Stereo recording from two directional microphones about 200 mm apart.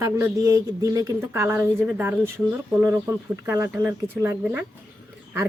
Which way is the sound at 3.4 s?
10° right (ahead or behind).